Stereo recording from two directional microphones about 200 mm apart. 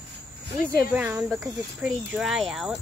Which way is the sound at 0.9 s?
5° right (ahead or behind).